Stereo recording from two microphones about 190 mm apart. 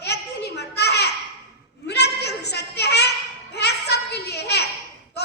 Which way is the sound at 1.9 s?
60° left (ahead or behind).